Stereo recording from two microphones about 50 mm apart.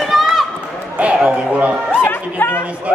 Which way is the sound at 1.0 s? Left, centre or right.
Right.